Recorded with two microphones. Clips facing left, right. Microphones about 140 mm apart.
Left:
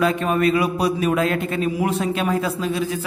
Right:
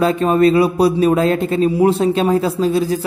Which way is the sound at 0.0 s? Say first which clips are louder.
Right 6 dB; 30° right (ahead or behind).